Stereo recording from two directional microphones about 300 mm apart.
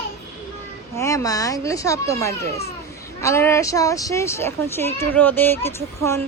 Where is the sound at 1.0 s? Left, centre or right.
Centre.